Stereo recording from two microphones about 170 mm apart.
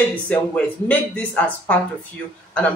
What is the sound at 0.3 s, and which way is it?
A man's voice, 10° left (ahead or behind).